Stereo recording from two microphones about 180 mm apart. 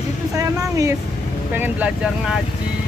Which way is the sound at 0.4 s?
20° right (ahead or behind).